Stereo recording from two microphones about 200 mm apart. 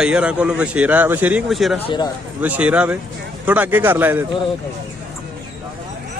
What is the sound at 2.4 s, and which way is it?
A man's voice, 5° right (ahead or behind).